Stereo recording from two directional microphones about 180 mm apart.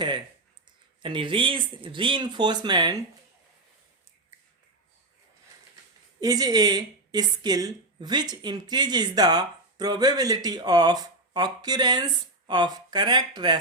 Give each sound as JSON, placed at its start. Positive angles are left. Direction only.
{"t": 1.0, "sound": "a woman's voice", "side_deg": -30}
{"t": 6.1, "sound": "a woman's voice", "side_deg": -20}